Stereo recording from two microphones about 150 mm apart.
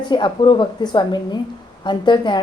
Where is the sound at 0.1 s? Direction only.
30° left (ahead or behind).